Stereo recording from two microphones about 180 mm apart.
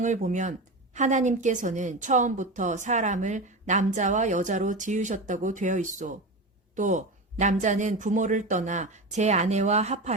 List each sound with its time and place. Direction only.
0.0 s a woman's voice: 45° right (ahead or behind)